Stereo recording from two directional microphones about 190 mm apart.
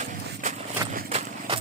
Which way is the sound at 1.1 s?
30° right (ahead or behind).